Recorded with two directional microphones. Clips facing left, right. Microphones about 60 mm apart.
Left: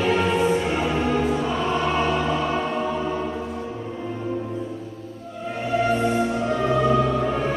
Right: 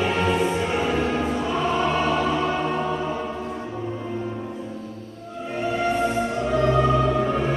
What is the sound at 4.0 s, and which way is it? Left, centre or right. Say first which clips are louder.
Music: left 1 dB; centre.